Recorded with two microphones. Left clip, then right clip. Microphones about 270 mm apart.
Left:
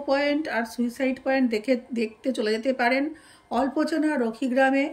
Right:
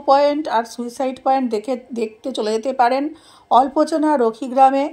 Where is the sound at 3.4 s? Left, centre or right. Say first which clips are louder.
Right 11 dB; right.